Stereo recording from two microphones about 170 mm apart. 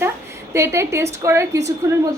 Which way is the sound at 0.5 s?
15° right (ahead or behind).